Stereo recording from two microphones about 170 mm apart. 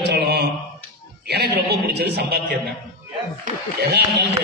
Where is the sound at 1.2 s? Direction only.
75° right (ahead or behind).